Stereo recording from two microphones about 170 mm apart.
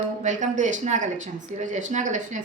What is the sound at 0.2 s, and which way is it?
Speech, 45° right (ahead or behind).